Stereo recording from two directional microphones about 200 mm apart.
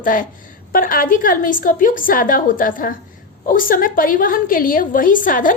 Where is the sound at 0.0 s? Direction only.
45° left (ahead or behind).